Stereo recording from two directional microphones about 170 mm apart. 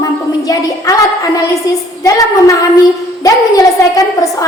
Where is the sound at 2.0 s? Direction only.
20° left (ahead or behind).